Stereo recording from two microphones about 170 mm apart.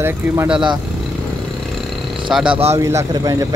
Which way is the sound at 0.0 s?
15° right (ahead or behind).